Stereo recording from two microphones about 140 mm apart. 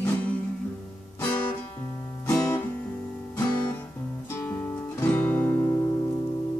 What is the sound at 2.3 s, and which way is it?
Guitar, 20° left (ahead or behind).